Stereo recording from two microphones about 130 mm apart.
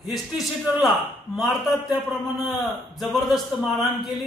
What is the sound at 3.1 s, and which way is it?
A man's voice, centre (ahead or behind).